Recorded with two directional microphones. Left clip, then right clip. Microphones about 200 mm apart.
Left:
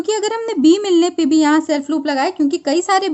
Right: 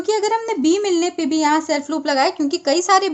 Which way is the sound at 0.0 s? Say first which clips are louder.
Even; 35° left (ahead or behind).